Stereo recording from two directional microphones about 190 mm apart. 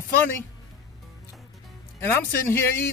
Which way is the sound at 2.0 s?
10° left (ahead or behind).